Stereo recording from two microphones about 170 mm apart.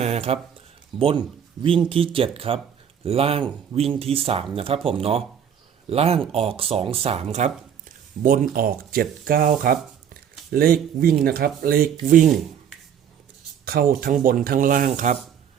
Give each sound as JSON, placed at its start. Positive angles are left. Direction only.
{"t": 0.0, "sound": "a sound", "side_deg": -40}
{"t": 0.9, "sound": "speech", "side_deg": -35}
{"t": 13.7, "sound": "speech", "side_deg": -60}